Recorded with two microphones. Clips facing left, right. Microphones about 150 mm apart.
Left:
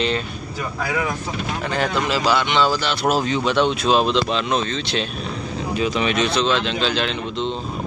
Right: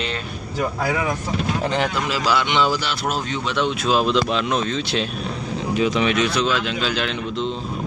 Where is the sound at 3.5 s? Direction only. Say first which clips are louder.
Left 1 dB; 30° left (ahead or behind).